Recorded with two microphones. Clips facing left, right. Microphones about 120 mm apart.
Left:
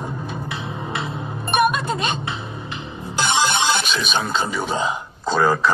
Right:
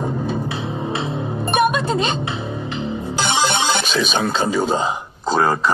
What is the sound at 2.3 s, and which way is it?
Music, 45° right (ahead or behind).